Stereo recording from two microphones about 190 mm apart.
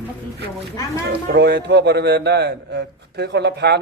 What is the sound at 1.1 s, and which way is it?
A man's voice, 60° right (ahead or behind).